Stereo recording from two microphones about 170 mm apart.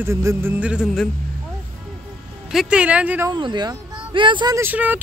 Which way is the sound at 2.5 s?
5° right (ahead or behind).